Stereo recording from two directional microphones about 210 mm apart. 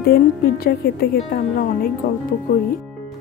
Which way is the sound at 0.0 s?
50° left (ahead or behind).